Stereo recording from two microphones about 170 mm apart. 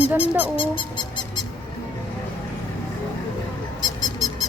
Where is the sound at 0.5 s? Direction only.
30° left (ahead or behind).